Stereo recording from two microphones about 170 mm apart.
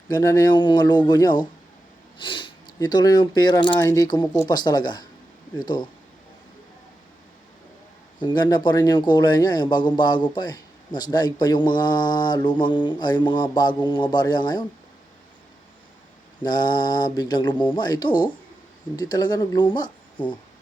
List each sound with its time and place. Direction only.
0.1 s speech: 20° left (ahead or behind)
8.2 s speech: 25° left (ahead or behind)
16.4 s speech: 25° left (ahead or behind)